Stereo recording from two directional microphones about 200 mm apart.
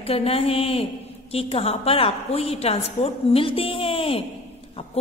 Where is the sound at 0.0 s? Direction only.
30° left (ahead or behind).